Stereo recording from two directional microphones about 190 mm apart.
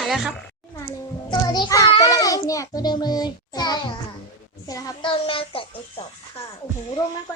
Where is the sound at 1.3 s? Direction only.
20° left (ahead or behind).